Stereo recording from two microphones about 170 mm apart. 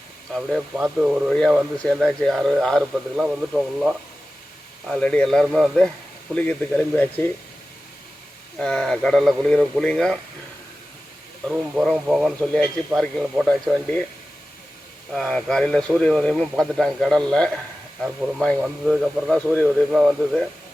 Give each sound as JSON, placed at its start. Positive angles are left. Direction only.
{"t": 0.3, "sound": "speech", "side_deg": 0}
{"t": 8.5, "sound": "speech", "side_deg": 5}
{"t": 11.4, "sound": "speech", "side_deg": -5}
{"t": 15.1, "sound": "speech", "side_deg": 5}